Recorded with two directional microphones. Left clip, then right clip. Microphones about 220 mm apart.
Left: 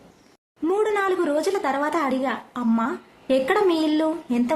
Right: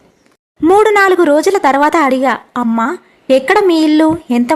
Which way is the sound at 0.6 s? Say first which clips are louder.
Right 14 dB; 40° right (ahead or behind).